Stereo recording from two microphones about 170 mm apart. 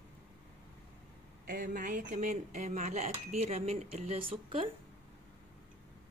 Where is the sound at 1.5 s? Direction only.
55° right (ahead or behind); by 4.7 s 35° right (ahead or behind).